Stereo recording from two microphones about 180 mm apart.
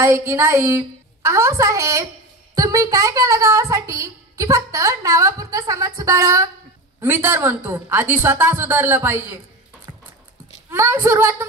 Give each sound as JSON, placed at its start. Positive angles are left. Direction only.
{"t": 0.0, "sound": "a woman's voice", "side_deg": -15}
{"t": 10.7, "sound": "a woman's voice", "side_deg": -15}